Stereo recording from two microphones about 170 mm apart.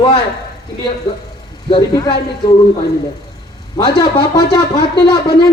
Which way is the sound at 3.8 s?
25° left (ahead or behind).